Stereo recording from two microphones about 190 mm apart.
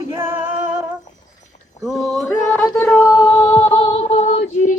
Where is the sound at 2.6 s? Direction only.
10° left (ahead or behind).